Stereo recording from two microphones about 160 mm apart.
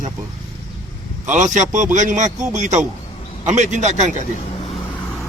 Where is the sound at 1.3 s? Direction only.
50° right (ahead or behind).